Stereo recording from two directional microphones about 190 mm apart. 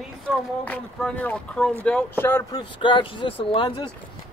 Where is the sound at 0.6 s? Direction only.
5° left (ahead or behind).